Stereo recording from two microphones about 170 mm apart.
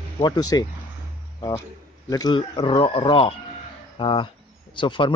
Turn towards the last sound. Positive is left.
turn(degrees=30)  # may be behind; listen again after turning